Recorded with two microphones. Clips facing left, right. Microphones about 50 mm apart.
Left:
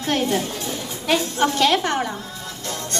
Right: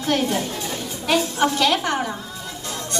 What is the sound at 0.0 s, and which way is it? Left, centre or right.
Speech, left.